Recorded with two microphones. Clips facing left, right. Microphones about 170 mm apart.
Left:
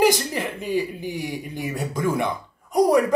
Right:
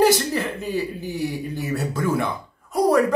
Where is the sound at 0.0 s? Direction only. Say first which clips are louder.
Right 2 dB; 15° left (ahead or behind).